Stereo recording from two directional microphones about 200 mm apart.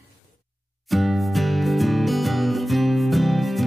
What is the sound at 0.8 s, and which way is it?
Music, centre (ahead or behind).